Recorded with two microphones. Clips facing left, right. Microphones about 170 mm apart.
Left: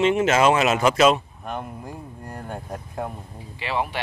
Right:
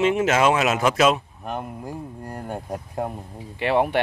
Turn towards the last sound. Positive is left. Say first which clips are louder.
# right 6 dB
turn(degrees=-55)  # may be behind; listen again after turning